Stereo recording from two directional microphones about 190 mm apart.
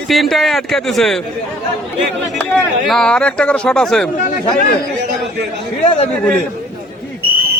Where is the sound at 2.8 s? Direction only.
5° left (ahead or behind).